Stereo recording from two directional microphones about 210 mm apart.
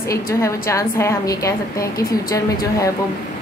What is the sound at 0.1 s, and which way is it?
A woman's voice, 15° left (ahead or behind).